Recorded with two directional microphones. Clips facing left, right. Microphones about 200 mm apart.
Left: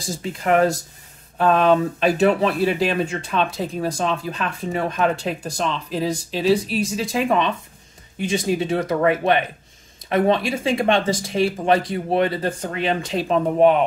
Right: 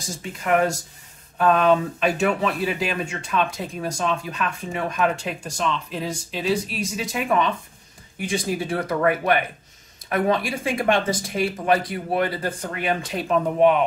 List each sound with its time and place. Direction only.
0.0 s speech: 30° left (ahead or behind)